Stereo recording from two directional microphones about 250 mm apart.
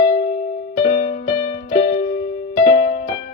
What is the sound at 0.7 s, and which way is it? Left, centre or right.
Music, left.